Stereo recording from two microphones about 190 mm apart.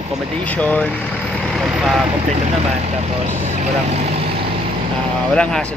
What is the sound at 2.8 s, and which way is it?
Speech, 35° right (ahead or behind).